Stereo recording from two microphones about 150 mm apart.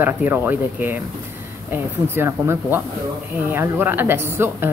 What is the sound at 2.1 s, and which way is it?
Speech, 15° right (ahead or behind).